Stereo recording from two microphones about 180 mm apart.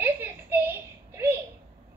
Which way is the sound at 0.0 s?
10° right (ahead or behind).